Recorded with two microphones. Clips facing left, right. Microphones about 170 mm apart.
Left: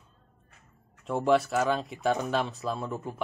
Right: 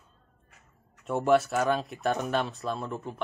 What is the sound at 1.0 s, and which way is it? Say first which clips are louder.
Speech: right 1 dB; centre (ahead or behind).